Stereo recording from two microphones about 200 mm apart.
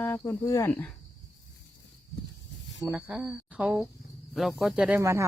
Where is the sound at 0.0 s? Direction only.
10° left (ahead or behind).